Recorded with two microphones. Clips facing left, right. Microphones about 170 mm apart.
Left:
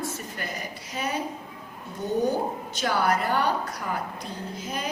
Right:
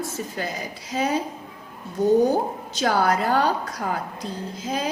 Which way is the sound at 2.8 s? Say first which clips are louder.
Right 4 dB; 90° right.